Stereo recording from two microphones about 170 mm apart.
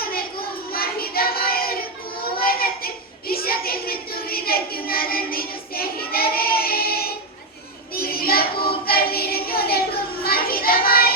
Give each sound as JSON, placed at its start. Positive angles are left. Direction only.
{"t": 0.0, "sound": "child singing", "side_deg": 60}